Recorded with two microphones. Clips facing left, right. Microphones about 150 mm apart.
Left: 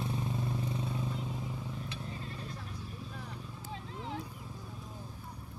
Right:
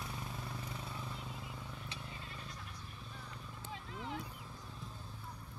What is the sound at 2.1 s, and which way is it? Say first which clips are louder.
Vehicle: left 7 dB; 35° left (ahead or behind).